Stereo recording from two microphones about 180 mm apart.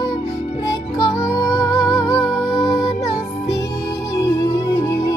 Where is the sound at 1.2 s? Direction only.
15° left (ahead or behind).